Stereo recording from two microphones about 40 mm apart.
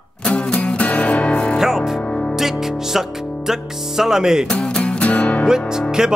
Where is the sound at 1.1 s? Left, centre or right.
Left.